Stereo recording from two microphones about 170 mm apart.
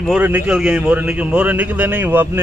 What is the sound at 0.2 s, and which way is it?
Speech, 10° right (ahead or behind).